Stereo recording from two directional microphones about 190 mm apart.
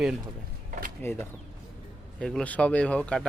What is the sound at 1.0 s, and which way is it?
Speech, 10° left (ahead or behind).